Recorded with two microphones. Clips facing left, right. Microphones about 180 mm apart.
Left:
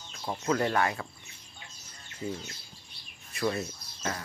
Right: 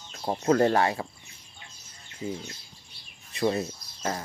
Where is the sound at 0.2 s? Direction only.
35° right (ahead or behind).